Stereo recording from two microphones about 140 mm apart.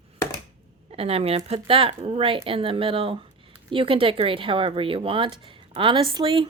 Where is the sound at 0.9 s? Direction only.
45° right (ahead or behind).